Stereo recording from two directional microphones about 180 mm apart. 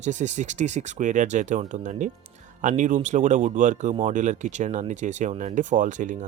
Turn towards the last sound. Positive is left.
turn(degrees=-45)  # may be behind; listen again after turning